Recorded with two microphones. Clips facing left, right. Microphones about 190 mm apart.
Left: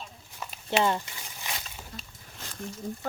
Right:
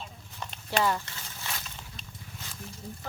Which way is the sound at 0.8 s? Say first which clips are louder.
Left 1 dB; 20° left (ahead or behind).